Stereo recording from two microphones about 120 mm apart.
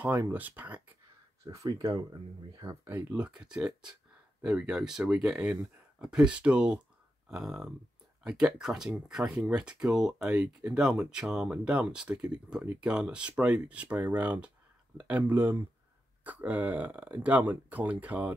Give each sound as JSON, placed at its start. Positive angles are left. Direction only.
{"t": 0.0, "sound": "speech", "side_deg": -15}
{"t": 1.4, "sound": "speech", "side_deg": -30}
{"t": 2.8, "sound": "speech", "side_deg": -15}